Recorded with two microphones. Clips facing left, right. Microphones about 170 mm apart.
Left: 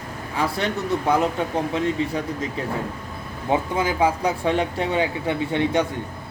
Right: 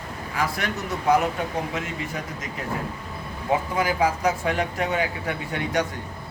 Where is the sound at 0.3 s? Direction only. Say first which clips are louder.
Left 3 dB; 30° left (ahead or behind).